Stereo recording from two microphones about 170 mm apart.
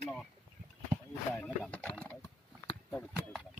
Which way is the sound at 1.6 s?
5° left (ahead or behind).